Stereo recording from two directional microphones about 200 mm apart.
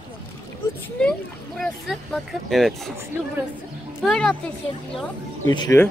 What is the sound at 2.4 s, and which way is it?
Speech, centre (ahead or behind).